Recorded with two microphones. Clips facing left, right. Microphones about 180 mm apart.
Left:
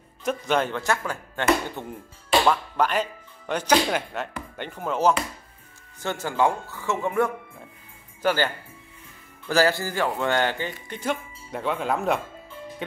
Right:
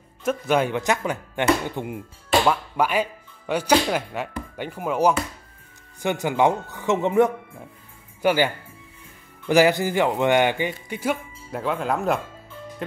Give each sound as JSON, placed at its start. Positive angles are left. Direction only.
{"t": 0.2, "sound": "speech", "side_deg": -5}
{"t": 9.5, "sound": "speech", "side_deg": -15}